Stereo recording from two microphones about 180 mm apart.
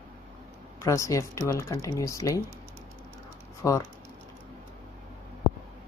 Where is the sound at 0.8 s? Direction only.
15° left (ahead or behind).